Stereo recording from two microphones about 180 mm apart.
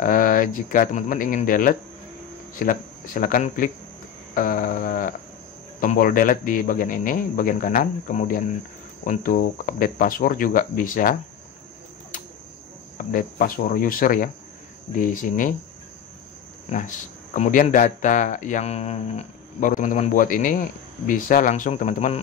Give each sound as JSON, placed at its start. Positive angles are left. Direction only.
{"t": 0.0, "sound": "speech", "side_deg": 50}
{"t": 4.4, "sound": "a sound", "side_deg": 50}
{"t": 5.8, "sound": "speech", "side_deg": 50}
{"t": 12.9, "sound": "speech", "side_deg": 50}
{"t": 16.6, "sound": "speech", "side_deg": 45}